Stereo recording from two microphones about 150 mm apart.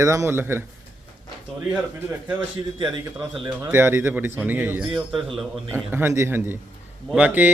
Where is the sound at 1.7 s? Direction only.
15° right (ahead or behind).